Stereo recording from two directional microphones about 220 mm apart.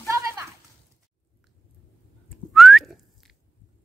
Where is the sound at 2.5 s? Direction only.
Centre (ahead or behind).